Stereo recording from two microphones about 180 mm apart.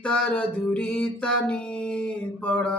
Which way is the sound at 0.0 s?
5° left (ahead or behind).